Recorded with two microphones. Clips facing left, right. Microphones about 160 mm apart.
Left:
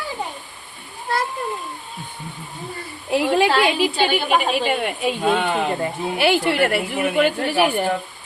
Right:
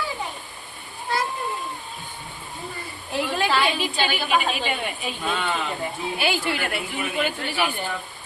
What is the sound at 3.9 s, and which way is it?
Speech, 50° left (ahead or behind).